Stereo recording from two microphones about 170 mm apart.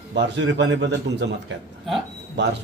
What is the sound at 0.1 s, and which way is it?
A man's voice, 90° right.